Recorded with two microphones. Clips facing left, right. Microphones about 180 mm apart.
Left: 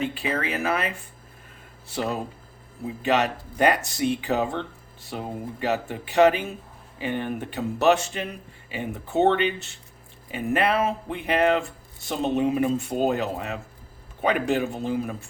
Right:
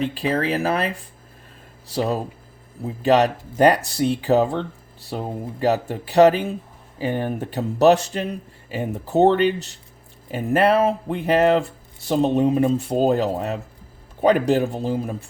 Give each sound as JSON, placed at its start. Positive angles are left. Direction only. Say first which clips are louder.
{"t": 0.0, "sound": "speech", "louder": "right 5 dB", "side_deg": -35}
{"t": 3.0, "sound": "speech", "louder": "right 6 dB", "side_deg": -35}